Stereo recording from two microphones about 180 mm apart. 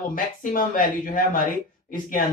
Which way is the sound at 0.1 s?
50° left (ahead or behind).